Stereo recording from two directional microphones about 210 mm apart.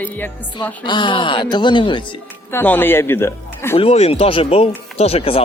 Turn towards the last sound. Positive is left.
turn(degrees=25)  # may be behind; listen again after turning